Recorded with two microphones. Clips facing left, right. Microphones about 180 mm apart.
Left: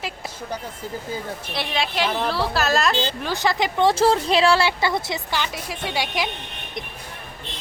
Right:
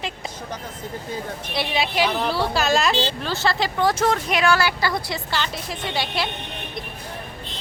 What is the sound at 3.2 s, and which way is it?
Speech, 15° left (ahead or behind).